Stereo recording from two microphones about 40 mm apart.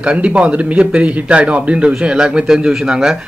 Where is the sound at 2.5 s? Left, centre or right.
Centre.